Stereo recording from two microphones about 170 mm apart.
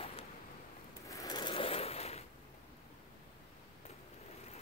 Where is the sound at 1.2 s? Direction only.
25° left (ahead or behind).